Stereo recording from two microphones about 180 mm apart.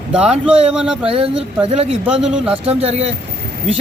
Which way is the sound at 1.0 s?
30° right (ahead or behind).